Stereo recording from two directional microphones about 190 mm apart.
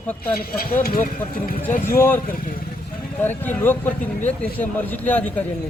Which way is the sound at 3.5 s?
10° left (ahead or behind).